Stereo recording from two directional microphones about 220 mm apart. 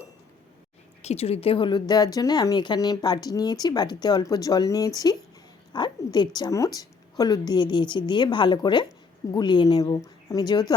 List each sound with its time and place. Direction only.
1.0 s a woman's voice: 30° left (ahead or behind)